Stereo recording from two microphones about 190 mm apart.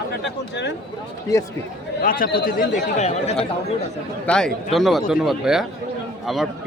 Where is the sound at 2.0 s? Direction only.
50° left (ahead or behind).